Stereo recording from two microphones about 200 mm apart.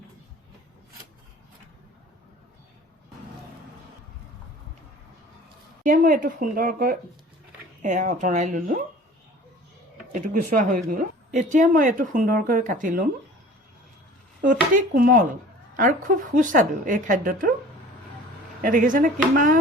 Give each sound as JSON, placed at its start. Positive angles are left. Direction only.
{"t": 5.8, "sound": "speech", "side_deg": -40}
{"t": 10.1, "sound": "speech", "side_deg": -40}
{"t": 14.4, "sound": "speech", "side_deg": -40}
{"t": 18.6, "sound": "speech", "side_deg": -45}